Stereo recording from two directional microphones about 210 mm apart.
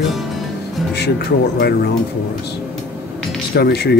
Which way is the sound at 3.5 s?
50° left (ahead or behind).